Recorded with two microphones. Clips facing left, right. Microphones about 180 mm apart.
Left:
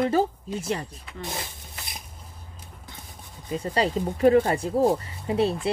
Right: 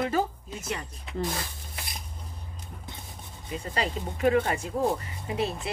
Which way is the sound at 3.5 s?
35° left (ahead or behind).